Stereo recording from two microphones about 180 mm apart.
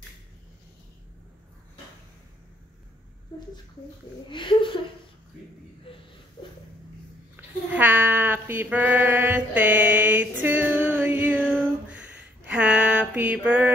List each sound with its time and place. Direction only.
4.3 s speech: 25° left (ahead or behind)
7.7 s a sound: 10° right (ahead or behind)
10.4 s female singing: 10° right (ahead or behind)
12.4 s mantra: 5° right (ahead or behind)